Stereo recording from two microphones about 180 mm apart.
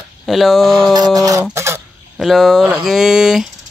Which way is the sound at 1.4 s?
15° right (ahead or behind).